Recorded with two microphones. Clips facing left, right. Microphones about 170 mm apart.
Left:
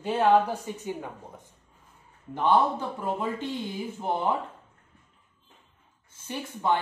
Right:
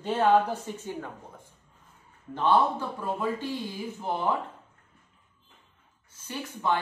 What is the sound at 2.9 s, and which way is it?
Speech, 25° left (ahead or behind).